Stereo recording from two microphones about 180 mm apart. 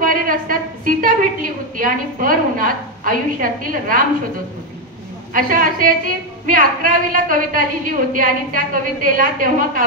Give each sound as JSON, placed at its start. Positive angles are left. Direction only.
{"t": 0.0, "sound": "a sound", "side_deg": -50}
{"t": 1.8, "sound": "a woman's voice", "side_deg": -50}
{"t": 5.3, "sound": "a woman's voice", "side_deg": -50}